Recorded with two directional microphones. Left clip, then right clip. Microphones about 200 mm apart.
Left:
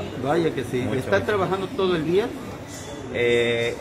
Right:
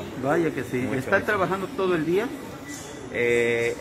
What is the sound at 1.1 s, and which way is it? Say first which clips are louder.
Speech: even; 35° right (ahead or behind).